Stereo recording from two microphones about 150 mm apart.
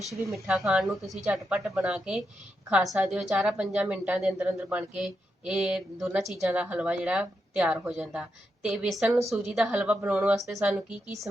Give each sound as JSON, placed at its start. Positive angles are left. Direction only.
{"t": 0.1, "sound": "a woman's voice", "side_deg": 0}
{"t": 10.3, "sound": "a woman's voice", "side_deg": 0}